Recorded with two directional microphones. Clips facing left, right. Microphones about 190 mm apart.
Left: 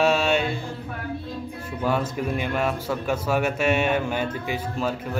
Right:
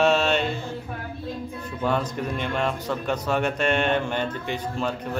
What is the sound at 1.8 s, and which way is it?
A man's voice, 5° left (ahead or behind).